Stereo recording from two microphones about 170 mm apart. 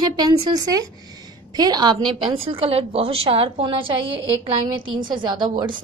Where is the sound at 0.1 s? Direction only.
20° right (ahead or behind).